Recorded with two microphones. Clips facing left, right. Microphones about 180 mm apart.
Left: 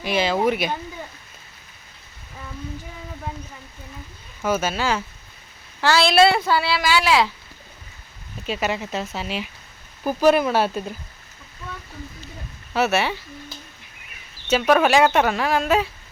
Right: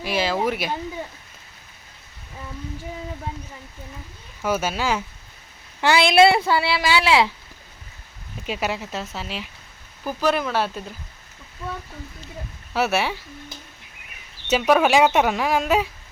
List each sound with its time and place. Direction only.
0.0 s speech: 5° right (ahead or behind)
4.4 s a woman's voice: 10° right (ahead or behind)
8.4 s speech: 5° right (ahead or behind)
10.0 s speech: 15° left (ahead or behind)
12.7 s speech: 10° right (ahead or behind)
14.5 s speech: 10° right (ahead or behind)